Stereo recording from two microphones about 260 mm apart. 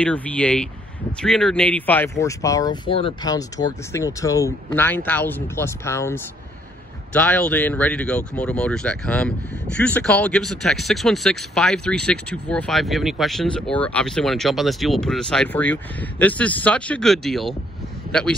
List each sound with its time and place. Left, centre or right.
0.0 s speech: centre